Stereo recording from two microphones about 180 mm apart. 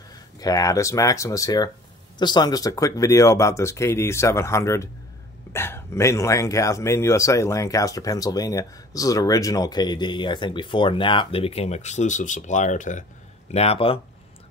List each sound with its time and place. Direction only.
0.1 s speech: 20° left (ahead or behind)